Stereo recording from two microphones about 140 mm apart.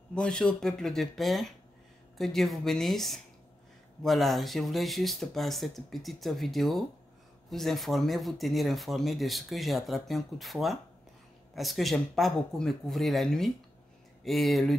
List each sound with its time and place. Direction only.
0.1 s speech: 5° left (ahead or behind)